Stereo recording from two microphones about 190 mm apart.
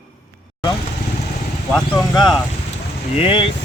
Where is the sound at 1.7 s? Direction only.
5° left (ahead or behind).